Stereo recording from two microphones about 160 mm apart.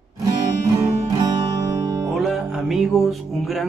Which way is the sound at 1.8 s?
20° right (ahead or behind).